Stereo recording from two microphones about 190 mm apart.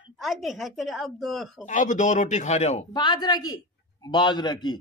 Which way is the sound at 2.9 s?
20° left (ahead or behind).